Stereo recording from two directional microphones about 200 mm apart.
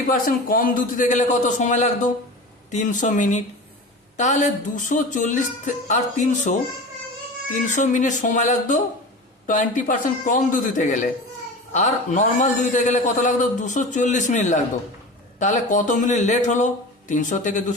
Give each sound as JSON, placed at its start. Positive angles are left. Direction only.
{"t": 0.1, "sound": "a man's voice", "side_deg": 45}
{"t": 7.7, "sound": "a man's voice", "side_deg": 40}